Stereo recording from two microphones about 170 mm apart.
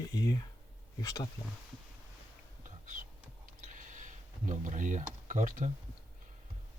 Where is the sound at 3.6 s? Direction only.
50° right (ahead or behind).